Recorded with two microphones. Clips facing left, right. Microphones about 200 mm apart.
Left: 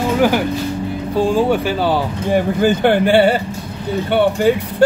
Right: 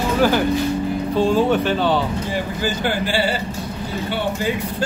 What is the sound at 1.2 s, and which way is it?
Speech, 10° left (ahead or behind).